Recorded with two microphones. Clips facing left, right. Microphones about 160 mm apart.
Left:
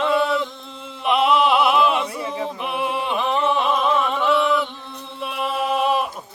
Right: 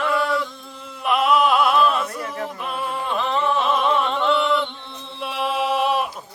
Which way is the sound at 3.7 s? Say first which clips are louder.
Even; 5° left (ahead or behind).